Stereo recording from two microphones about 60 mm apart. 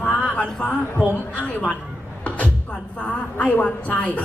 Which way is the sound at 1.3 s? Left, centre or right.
Left.